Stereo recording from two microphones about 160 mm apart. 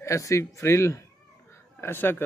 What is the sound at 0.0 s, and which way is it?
A man's voice, 20° left (ahead or behind).